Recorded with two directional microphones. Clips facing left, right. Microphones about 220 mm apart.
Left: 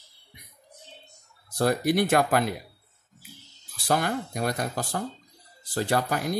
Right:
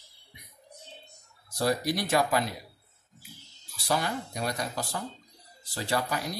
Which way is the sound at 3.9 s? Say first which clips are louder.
Left 4 dB; 55° left (ahead or behind).